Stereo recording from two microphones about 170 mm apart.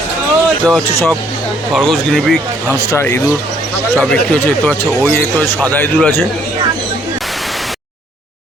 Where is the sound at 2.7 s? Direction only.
15° left (ahead or behind).